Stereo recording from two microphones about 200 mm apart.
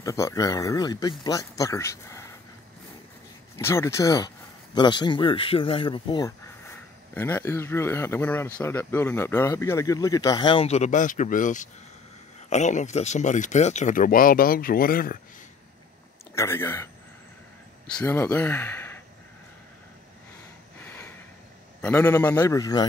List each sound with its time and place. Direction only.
0.0 s speech: 15° left (ahead or behind)
3.5 s speech: 15° left (ahead or behind)
7.2 s speech: 10° left (ahead or behind); by 15.1 s 45° left (ahead or behind)
16.3 s speech: 10° left (ahead or behind)
20.8 s a sound: 10° left (ahead or behind)
21.8 s speech: 10° left (ahead or behind)